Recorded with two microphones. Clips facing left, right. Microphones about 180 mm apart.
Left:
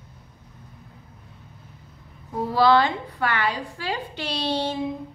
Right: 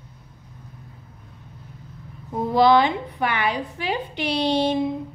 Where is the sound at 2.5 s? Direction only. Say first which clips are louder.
Right 2 dB; 15° right (ahead or behind).